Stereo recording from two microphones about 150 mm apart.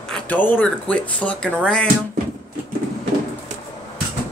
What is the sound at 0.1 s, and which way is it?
Speech, 10° left (ahead or behind).